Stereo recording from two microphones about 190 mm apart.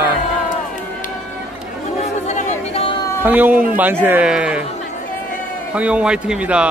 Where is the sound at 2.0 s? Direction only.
35° left (ahead or behind).